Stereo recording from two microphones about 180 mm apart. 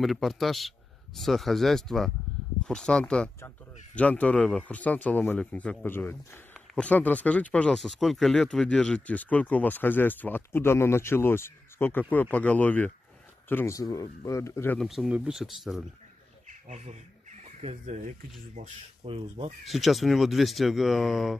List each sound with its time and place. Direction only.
0.0 s a man's voice: centre (ahead or behind)
14.8 s a man's voice: centre (ahead or behind)
16.6 s speech: 40° right (ahead or behind)
19.6 s a man's voice: centre (ahead or behind)